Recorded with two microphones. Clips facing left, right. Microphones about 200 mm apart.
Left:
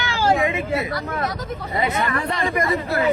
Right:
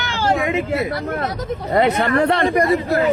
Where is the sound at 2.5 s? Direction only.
35° right (ahead or behind).